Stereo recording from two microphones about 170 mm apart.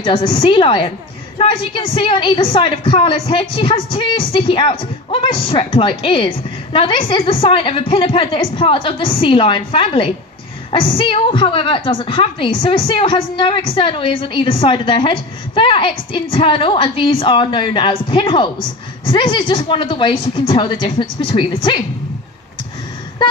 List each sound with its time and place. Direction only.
0.0 s a woman's voice: 30° left (ahead or behind)